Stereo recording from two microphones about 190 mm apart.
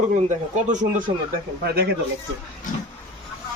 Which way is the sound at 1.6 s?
55° right (ahead or behind).